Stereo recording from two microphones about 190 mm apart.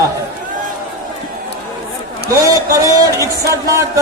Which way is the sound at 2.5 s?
15° right (ahead or behind).